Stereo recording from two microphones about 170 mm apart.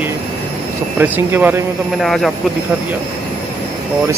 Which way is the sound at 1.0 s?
15° right (ahead or behind).